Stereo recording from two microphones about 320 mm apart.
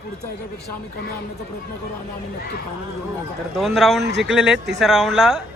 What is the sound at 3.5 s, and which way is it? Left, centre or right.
Speech, centre.